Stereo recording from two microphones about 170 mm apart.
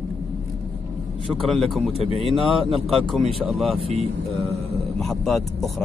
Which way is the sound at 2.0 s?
35° left (ahead or behind).